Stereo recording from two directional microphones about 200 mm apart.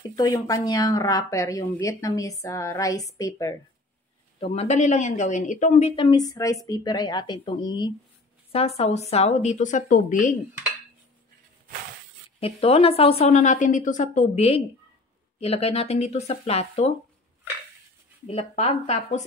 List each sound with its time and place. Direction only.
0.1 s speech: 20° left (ahead or behind)
4.4 s speech: 35° left (ahead or behind)
6.0 s a woman's voice: 20° left (ahead or behind); by 10.3 s 40° left (ahead or behind)
12.4 s speech: 30° left (ahead or behind)
18.2 s speech: 35° left (ahead or behind)